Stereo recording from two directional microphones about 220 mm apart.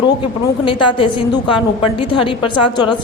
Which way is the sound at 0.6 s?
20° left (ahead or behind).